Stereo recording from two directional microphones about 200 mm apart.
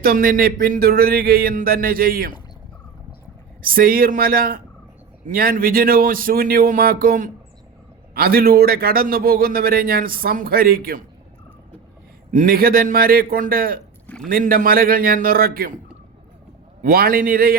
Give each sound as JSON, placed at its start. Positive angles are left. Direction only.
{"t": 0.0, "sound": "a man's voice", "side_deg": -45}
{"t": 3.6, "sound": "a man's voice", "side_deg": -45}
{"t": 12.3, "sound": "a man's voice", "side_deg": -45}
{"t": 16.8, "sound": "a man's voice", "side_deg": -50}